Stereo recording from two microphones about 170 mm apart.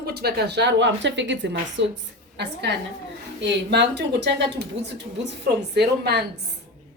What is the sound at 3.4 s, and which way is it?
Speech, 90° right.